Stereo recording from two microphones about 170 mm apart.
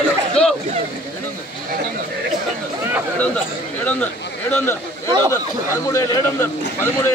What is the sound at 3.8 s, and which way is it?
Speech, 10° left (ahead or behind).